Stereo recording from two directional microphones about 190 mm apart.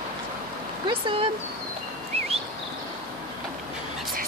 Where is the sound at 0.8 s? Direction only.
25° right (ahead or behind).